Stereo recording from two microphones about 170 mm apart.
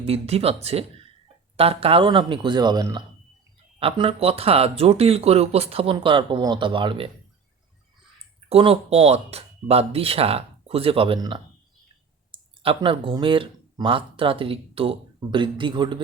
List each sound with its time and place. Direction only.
0.0 s speech: 35° right (ahead or behind)
8.4 s speech: 35° right (ahead or behind)